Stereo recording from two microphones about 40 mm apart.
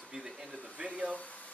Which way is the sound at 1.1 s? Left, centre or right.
Left.